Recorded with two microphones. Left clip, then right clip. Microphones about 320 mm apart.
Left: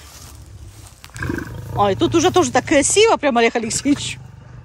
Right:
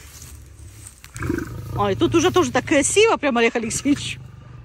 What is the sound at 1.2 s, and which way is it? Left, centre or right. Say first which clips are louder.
Roaring cats: even; left.